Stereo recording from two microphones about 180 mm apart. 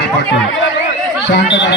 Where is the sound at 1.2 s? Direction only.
80° left.